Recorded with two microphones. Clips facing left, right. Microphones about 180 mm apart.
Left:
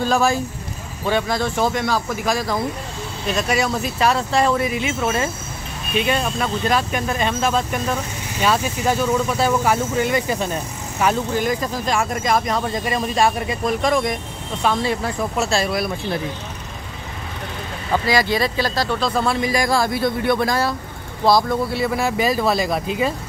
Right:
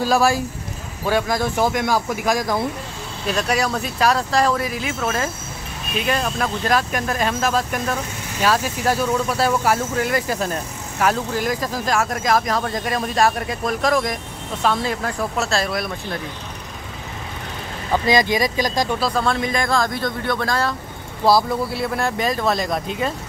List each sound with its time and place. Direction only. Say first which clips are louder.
0.0 s speech: right 1 dB; 5° right (ahead or behind)
3.3 s speech: even; 5° left (ahead or behind)
18.0 s speech: right 2 dB; 20° right (ahead or behind)
18.9 s speech: left 1 dB; centre (ahead or behind)
21.3 s speech: even; 5° right (ahead or behind)